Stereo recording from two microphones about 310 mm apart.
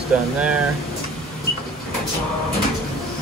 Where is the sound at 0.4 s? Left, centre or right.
Centre.